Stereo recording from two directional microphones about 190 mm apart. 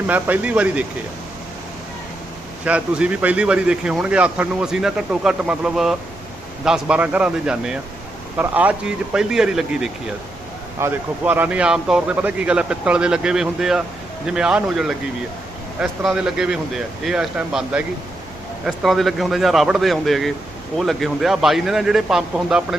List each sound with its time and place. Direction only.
0.1 s speech: 10° right (ahead or behind)
2.6 s a man's voice: 5° right (ahead or behind)